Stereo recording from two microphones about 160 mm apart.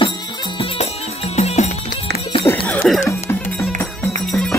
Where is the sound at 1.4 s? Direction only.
45° left (ahead or behind).